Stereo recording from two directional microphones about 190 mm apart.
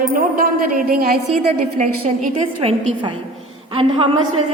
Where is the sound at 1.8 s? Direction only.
40° right (ahead or behind).